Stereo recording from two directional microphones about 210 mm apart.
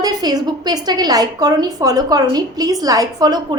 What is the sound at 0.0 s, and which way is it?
A woman's voice, 20° right (ahead or behind).